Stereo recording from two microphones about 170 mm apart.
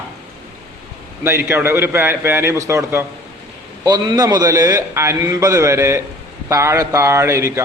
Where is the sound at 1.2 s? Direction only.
15° right (ahead or behind).